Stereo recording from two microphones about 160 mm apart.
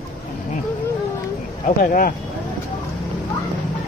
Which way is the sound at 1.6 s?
60° left (ahead or behind).